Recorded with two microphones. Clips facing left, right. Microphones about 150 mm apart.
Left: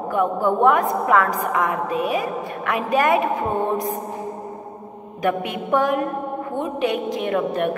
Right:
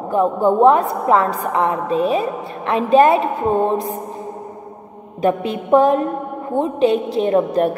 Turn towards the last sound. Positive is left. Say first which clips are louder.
# right 6 dB
turn(degrees=-35)  # may be behind; listen again after turning